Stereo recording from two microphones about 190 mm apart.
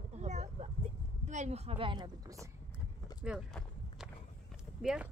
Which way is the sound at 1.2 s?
35° right (ahead or behind).